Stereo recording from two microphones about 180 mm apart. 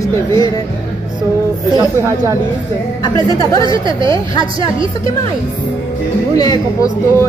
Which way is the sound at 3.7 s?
25° right (ahead or behind).